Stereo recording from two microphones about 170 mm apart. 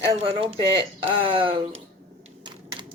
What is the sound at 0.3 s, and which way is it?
Speech, 30° right (ahead or behind).